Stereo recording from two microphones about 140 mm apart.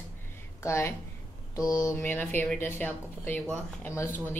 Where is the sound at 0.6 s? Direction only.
20° left (ahead or behind).